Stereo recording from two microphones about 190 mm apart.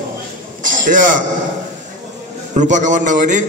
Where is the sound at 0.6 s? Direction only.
45° right (ahead or behind).